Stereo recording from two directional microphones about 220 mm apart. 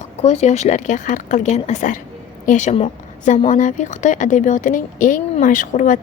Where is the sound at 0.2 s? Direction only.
30° left (ahead or behind).